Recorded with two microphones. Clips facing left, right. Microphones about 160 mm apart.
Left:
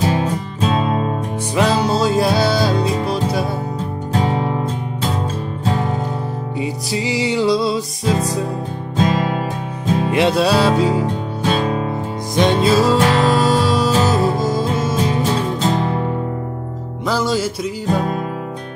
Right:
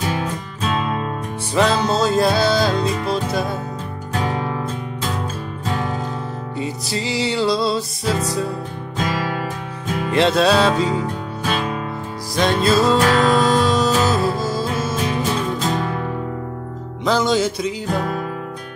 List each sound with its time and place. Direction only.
0.0 s music: 30° left (ahead or behind)
1.5 s music: 10° left (ahead or behind)
4.1 s music: 25° left (ahead or behind)
6.6 s music: 15° left (ahead or behind)
8.9 s music: 25° left (ahead or behind)
10.1 s music: 10° left (ahead or behind)
11.4 s music: 30° left (ahead or behind)
12.4 s music: 20° left (ahead or behind)
15.6 s music: 25° left (ahead or behind)
17.0 s music: 5° left (ahead or behind)